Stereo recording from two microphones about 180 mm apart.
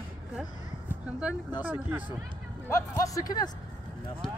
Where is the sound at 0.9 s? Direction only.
5° right (ahead or behind).